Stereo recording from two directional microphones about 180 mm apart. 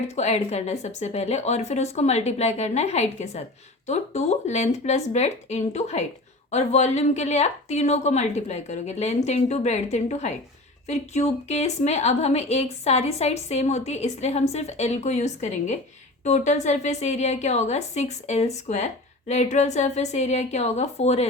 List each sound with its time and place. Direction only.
0.2 s a woman's voice: 35° left (ahead or behind)